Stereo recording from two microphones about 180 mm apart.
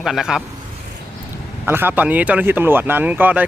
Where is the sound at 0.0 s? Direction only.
Centre (ahead or behind).